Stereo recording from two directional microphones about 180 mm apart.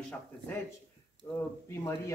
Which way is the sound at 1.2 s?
15° left (ahead or behind).